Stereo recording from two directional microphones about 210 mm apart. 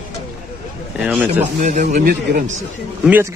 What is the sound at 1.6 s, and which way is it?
Speech, 35° right (ahead or behind).